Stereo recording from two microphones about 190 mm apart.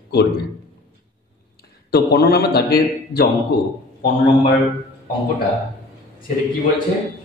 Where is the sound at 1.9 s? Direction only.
55° left (ahead or behind).